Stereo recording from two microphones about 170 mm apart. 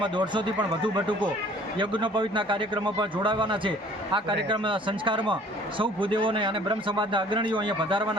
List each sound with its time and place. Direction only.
0.0 s a man's voice: 30° right (ahead or behind)